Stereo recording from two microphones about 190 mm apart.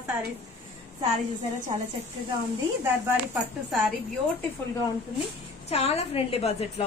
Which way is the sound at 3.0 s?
10° right (ahead or behind).